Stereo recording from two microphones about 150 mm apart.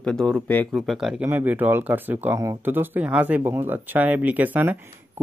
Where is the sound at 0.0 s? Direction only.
5° left (ahead or behind).